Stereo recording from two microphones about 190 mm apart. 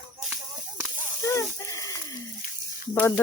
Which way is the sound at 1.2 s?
15° left (ahead or behind).